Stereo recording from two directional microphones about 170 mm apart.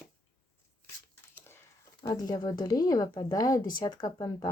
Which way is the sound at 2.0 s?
20° left (ahead or behind).